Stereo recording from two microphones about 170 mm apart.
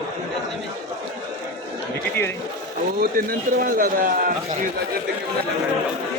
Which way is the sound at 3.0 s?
60° right (ahead or behind).